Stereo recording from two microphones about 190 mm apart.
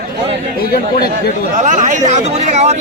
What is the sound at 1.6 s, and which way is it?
Speech, 40° right (ahead or behind).